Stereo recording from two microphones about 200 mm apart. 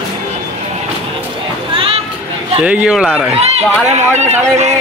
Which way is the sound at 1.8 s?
30° right (ahead or behind).